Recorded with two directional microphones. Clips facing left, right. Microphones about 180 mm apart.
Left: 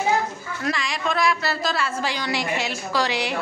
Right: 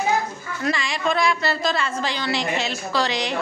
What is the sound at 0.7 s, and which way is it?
A woman's voice, centre (ahead or behind).